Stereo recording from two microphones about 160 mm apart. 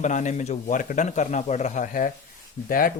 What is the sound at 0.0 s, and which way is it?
A man's voice, 50° left (ahead or behind).